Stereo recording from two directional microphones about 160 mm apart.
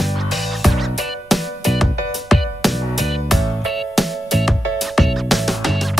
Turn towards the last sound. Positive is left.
turn(degrees=0)  # may be behind; listen again after turning